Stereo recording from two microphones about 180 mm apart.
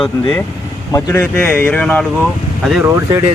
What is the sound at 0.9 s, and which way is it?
Speech, 15° left (ahead or behind).